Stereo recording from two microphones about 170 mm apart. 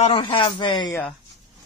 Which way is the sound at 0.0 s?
35° left (ahead or behind).